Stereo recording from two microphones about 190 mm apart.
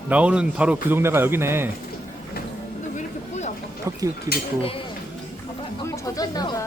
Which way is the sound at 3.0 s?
35° left (ahead or behind).